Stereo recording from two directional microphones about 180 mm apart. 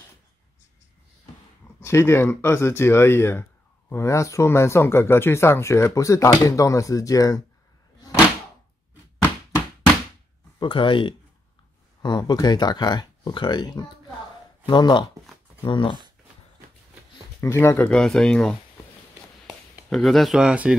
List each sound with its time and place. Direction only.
1.8 s speech: 15° left (ahead or behind)
10.6 s speech: 25° left (ahead or behind)
17.4 s speech: 15° left (ahead or behind); by 20.7 s 5° right (ahead or behind)